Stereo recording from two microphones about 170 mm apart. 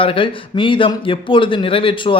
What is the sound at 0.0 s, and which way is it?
A man's voice, 30° left (ahead or behind).